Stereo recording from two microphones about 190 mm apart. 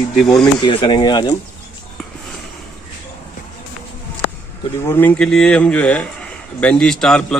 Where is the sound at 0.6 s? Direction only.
25° left (ahead or behind).